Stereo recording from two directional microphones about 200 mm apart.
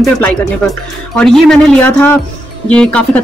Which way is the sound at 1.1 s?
Centre (ahead or behind).